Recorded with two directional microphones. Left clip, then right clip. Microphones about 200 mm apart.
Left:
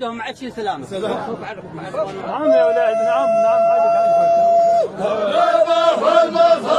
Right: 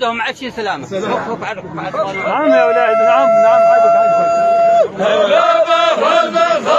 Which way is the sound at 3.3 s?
5° left (ahead or behind).